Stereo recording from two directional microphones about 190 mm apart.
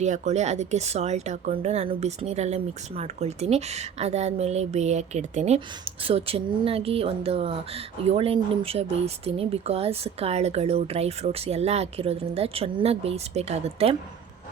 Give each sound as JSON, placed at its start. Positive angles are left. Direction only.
{"t": 0.0, "sound": "a woman's voice", "side_deg": -40}